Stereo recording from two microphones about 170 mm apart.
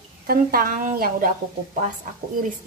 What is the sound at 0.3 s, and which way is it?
A woman's voice, 60° right (ahead or behind).